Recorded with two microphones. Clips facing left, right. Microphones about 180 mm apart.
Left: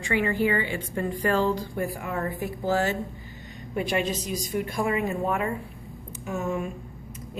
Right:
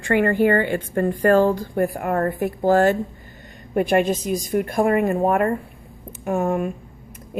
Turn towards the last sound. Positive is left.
turn(degrees=-55)  # may be behind; listen again after turning